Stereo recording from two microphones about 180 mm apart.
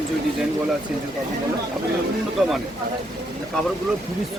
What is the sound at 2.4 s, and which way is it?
Speech, 5° right (ahead or behind).